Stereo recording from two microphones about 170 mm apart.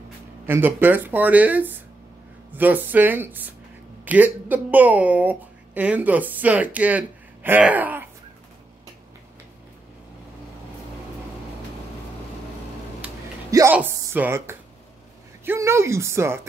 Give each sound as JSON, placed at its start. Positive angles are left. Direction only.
{"t": 0.5, "sound": "speech", "side_deg": -10}
{"t": 13.5, "sound": "music", "side_deg": -20}
{"t": 13.7, "sound": "speech", "side_deg": -10}